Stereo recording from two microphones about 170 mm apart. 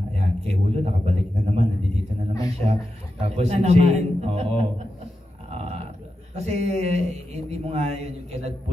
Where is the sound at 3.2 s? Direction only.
40° right (ahead or behind).